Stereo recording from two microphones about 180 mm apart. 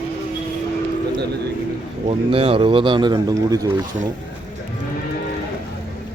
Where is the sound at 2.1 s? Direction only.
30° right (ahead or behind).